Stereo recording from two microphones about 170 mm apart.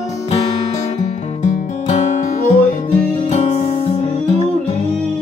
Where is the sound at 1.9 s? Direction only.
45° left (ahead or behind).